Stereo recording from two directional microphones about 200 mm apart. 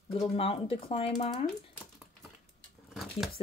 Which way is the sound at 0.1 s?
30° left (ahead or behind).